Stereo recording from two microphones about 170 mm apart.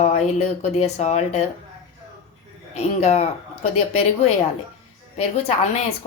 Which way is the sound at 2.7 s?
40° left (ahead or behind).